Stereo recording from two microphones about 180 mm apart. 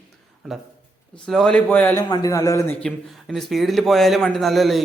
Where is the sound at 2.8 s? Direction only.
Centre (ahead or behind).